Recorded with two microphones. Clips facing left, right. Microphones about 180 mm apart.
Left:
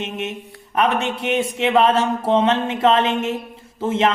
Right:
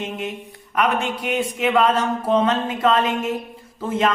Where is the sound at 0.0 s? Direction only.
25° left (ahead or behind).